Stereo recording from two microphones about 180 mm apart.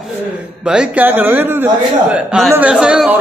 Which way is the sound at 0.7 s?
5° right (ahead or behind).